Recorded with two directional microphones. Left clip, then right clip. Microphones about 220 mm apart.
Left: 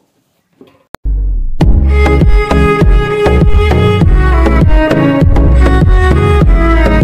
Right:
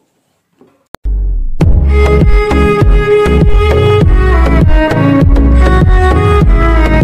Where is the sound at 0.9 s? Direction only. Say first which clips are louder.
Left 1 dB; centre (ahead or behind).